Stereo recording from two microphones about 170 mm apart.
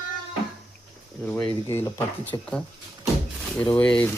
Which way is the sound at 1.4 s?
15° left (ahead or behind).